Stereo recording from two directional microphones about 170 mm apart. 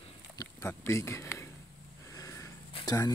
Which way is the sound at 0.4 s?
15° left (ahead or behind).